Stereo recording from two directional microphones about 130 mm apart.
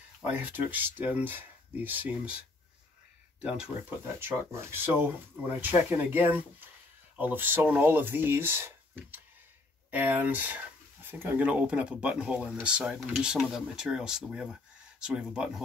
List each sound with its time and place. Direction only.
0.3 s speech: 15° right (ahead or behind)
4.2 s speech: 20° right (ahead or behind)